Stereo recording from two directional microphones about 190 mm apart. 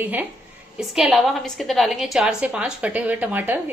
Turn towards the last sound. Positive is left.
turn(degrees=-10)  # may be behind; listen again after turning